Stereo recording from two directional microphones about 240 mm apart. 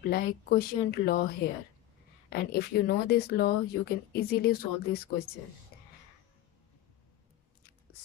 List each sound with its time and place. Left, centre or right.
0.0 s speech: left
5.7 s whispering: left